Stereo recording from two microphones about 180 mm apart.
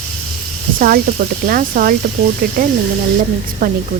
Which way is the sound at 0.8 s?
50° right (ahead or behind).